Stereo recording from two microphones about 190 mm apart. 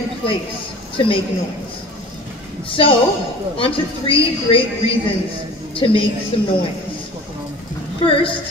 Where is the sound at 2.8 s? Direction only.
30° left (ahead or behind).